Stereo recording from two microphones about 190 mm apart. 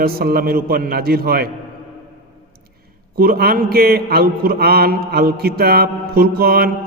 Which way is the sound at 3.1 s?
55° right (ahead or behind).